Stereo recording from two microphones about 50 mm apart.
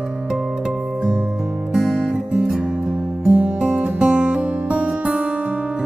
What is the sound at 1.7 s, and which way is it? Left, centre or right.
Music, centre.